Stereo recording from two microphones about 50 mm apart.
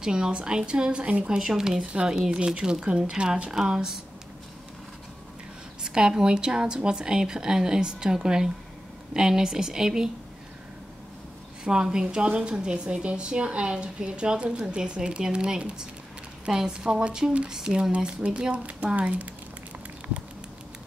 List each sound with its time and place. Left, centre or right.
0.0 s a woman's voice: centre
1.4 s a woman's voice: centre
1.8 s a woman's voice: right
5.9 s a woman's voice: centre
11.6 s a woman's voice: centre